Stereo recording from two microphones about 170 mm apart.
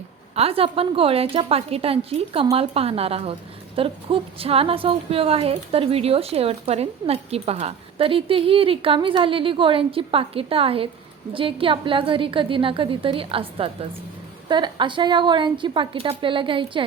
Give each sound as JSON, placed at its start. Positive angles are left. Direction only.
{"t": 0.3, "sound": "a woman's voice", "side_deg": -35}